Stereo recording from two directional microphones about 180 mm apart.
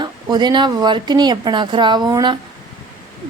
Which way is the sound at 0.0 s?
25° right (ahead or behind).